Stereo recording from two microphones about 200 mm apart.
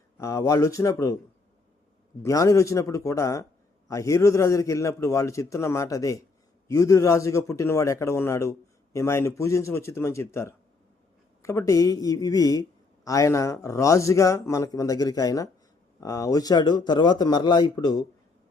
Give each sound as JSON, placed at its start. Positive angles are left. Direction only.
{"t": 0.2, "sound": "a man's voice", "side_deg": 15}
{"t": 2.2, "sound": "a man's voice", "side_deg": 15}